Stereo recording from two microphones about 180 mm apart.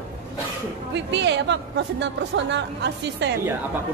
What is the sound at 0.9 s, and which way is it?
Speech, 75° right (ahead or behind).